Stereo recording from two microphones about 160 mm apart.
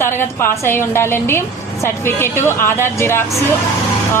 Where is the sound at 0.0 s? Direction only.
15° left (ahead or behind).